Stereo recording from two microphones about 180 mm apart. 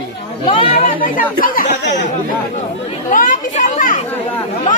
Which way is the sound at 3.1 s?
50° left (ahead or behind).